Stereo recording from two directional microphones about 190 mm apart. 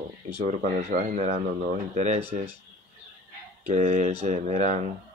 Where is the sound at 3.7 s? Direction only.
35° right (ahead or behind).